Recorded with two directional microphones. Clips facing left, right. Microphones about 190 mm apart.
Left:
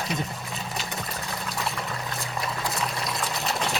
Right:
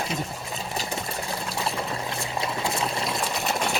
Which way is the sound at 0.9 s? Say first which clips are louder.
Right 3 dB; 30° right (ahead or behind).